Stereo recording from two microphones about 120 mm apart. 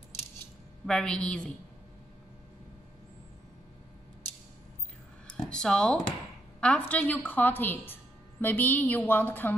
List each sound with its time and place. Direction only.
0.8 s a woman's voice: 5° left (ahead or behind)
5.3 s a woman's voice: 5° left (ahead or behind)